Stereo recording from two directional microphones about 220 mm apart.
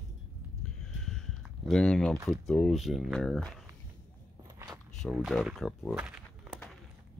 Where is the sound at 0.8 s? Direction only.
Centre (ahead or behind).